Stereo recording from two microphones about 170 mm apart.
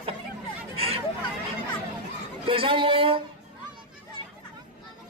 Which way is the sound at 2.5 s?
30° right (ahead or behind).